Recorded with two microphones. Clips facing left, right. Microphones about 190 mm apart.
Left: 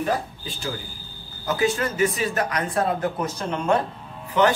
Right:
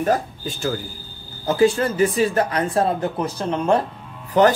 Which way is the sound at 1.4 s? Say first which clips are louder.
Right 6 dB; 30° right (ahead or behind).